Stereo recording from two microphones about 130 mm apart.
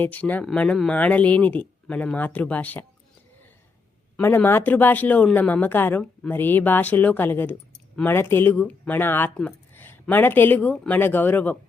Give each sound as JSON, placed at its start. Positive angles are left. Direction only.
{"t": 0.0, "sound": "speech", "side_deg": 10}
{"t": 4.2, "sound": "speech", "side_deg": 20}